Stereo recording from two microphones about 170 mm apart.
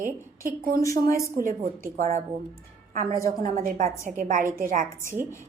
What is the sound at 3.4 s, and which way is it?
A woman's voice, 50° right (ahead or behind).